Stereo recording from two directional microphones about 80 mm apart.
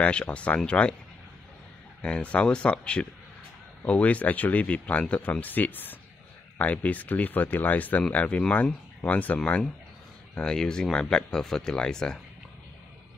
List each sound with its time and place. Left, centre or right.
0.0 s speech: centre
2.0 s speech: centre